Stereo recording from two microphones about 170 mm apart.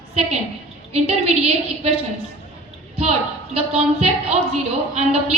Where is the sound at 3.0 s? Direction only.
35° right (ahead or behind).